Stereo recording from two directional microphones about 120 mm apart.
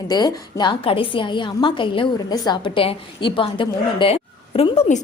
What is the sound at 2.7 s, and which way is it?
A woman's voice, 45° left (ahead or behind).